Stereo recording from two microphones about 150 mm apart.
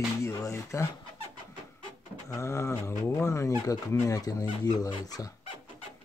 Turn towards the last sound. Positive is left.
turn(degrees=25)  # may be behind; listen again after turning